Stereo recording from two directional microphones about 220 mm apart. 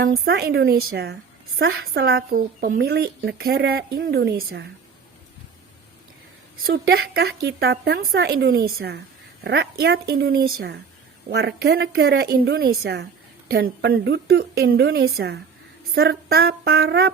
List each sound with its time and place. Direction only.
0.0 s speech: 45° right (ahead or behind)
6.7 s speech: 45° right (ahead or behind)